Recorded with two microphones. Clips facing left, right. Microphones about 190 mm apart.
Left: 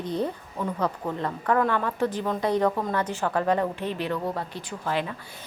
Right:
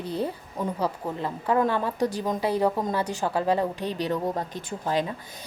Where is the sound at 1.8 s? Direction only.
15° right (ahead or behind).